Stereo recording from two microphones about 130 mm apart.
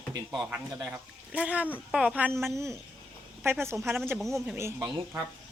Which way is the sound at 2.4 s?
20° right (ahead or behind).